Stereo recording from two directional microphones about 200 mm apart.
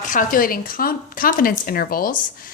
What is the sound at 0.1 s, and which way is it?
A woman's voice, 45° left (ahead or behind).